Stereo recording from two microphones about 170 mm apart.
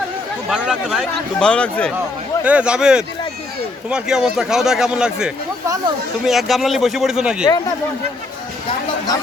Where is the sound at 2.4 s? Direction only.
5° right (ahead or behind).